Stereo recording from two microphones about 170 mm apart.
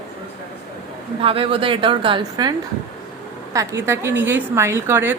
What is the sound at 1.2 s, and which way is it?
A woman's voice, 35° right (ahead or behind).